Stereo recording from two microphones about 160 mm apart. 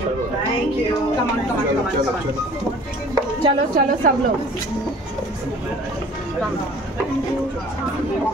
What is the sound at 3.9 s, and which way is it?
Speech, 60° right (ahead or behind).